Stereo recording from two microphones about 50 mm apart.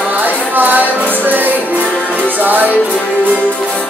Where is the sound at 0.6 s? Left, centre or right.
Right.